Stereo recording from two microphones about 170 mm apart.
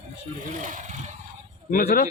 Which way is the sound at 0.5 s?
50° right (ahead or behind).